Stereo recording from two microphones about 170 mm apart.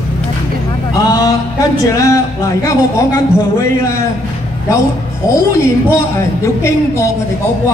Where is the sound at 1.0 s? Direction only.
20° left (ahead or behind).